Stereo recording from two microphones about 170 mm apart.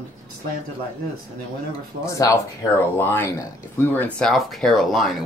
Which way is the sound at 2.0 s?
20° left (ahead or behind).